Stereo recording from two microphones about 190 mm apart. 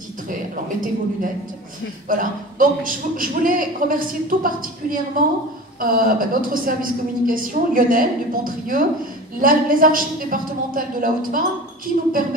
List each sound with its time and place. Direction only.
0.3 s a man's voice: 45° right (ahead or behind)